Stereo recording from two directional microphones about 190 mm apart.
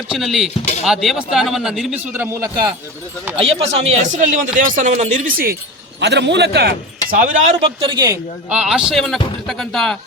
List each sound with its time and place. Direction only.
0.1 s a man's voice: centre (ahead or behind)
3.3 s speech: 30° right (ahead or behind); by 5.5 s 50° right (ahead or behind)
6.0 s a man's voice: 65° right (ahead or behind)
7.1 s speech: 45° right (ahead or behind); by 8.2 s 20° right (ahead or behind)
8.4 s a man's voice: 5° right (ahead or behind)